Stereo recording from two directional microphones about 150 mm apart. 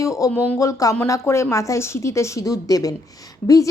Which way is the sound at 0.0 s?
20° left (ahead or behind).